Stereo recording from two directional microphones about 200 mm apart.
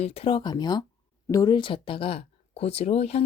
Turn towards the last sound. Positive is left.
turn(degrees=30)  # may be behind; listen again after turning